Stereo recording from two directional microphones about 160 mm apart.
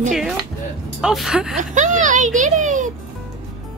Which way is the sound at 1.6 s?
50° right (ahead or behind).